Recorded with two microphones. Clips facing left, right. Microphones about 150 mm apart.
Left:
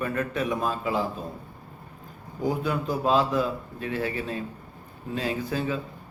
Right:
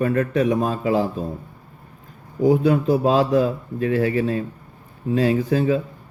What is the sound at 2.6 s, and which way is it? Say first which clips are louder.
Speech: right 9 dB; 35° right (ahead or behind).